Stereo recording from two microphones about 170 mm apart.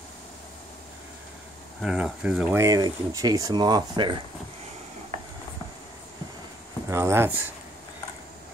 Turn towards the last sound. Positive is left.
turn(degrees=-15)  # may be behind; listen again after turning